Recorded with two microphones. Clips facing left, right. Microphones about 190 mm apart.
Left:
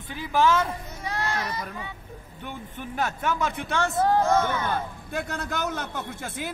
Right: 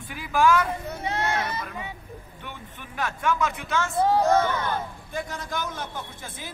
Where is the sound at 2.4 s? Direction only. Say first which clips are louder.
Left 8 dB; 40° left (ahead or behind).